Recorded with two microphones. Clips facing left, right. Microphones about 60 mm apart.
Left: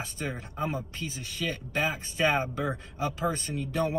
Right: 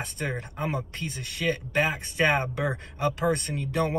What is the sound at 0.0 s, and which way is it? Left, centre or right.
Speech, right.